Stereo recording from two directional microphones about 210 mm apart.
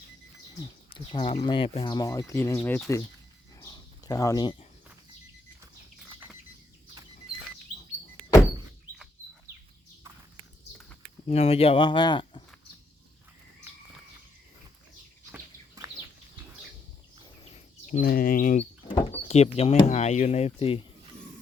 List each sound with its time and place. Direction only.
0.9 s speech: 25° left (ahead or behind); by 3.0 s 10° left (ahead or behind)
3.6 s a sound: 15° left (ahead or behind)
11.3 s speech: 30° left (ahead or behind)
15.8 s a sound: 15° right (ahead or behind)
17.4 s bird: 35° left (ahead or behind)
18.9 s speech: 30° left (ahead or behind)